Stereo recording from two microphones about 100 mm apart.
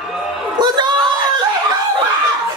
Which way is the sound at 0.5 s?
45° right (ahead or behind).